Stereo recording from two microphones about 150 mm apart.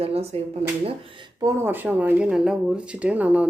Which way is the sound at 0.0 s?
40° right (ahead or behind).